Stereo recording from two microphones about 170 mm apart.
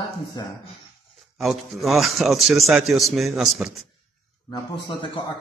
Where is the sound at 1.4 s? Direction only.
Centre (ahead or behind).